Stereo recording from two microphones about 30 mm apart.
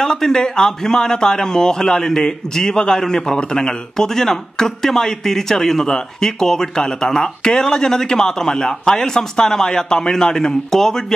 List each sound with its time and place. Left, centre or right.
0.0 s speech: left
3.9 s a man's voice: centre